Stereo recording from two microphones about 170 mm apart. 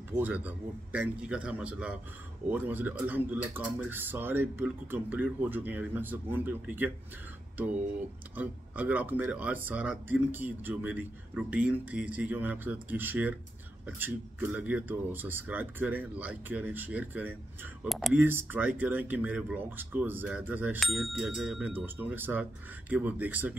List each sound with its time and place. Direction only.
0.1 s speech: 10° right (ahead or behind)
8.4 s speech: 10° right (ahead or behind)
17.8 s speech: centre (ahead or behind)
18.2 s speech: 10° right (ahead or behind)